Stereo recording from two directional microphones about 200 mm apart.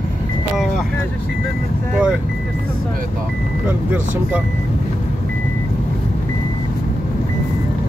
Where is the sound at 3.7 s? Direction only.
10° right (ahead or behind).